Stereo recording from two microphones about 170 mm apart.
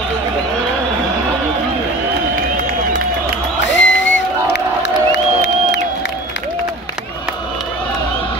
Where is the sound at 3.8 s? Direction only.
90° left.